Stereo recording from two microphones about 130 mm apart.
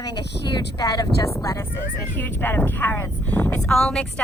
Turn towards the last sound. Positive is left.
turn(degrees=5)  # may be behind; listen again after turning